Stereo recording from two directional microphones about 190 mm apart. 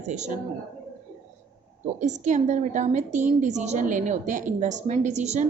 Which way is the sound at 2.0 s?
40° right (ahead or behind).